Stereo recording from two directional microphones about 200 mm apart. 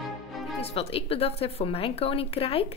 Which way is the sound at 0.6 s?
30° left (ahead or behind).